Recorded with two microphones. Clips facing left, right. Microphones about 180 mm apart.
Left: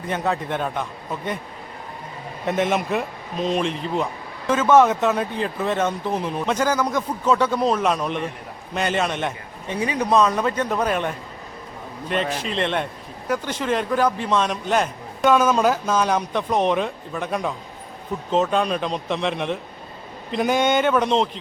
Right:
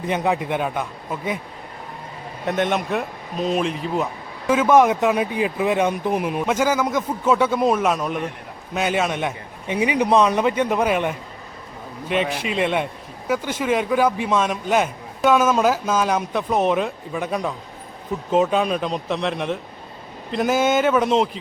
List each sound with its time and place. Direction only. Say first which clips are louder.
0.1 s speech: right 2 dB; 15° right (ahead or behind)
2.4 s speech: even; centre (ahead or behind)